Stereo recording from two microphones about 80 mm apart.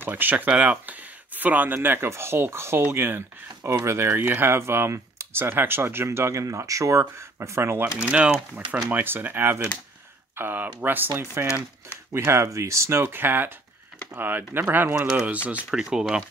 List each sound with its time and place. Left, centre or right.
0.0 s speech: right
8.1 s speech: centre
8.9 s speech: right
15.0 s speech: centre